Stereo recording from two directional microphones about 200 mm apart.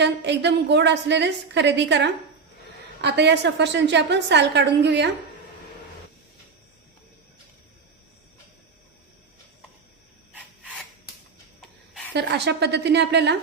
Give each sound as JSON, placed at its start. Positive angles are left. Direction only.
{"t": 0.0, "sound": "a woman's voice", "side_deg": -60}
{"t": 12.1, "sound": "a woman's voice", "side_deg": -60}